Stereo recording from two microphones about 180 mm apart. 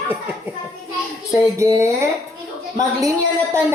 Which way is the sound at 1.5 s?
15° right (ahead or behind).